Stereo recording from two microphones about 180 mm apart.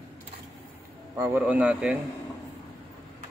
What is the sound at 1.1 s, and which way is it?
Speech, 20° right (ahead or behind).